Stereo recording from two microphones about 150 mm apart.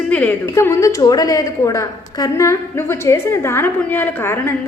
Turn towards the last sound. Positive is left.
turn(degrees=15)  # may be behind; listen again after turning